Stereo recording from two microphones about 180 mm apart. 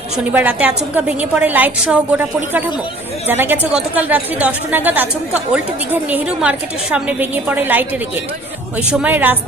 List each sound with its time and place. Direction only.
0.3 s a woman's voice: 10° right (ahead or behind)